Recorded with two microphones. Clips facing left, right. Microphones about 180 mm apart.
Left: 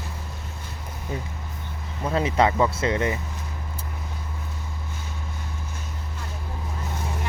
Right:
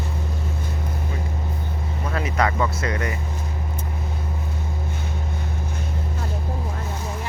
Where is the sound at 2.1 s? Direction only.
25° left (ahead or behind).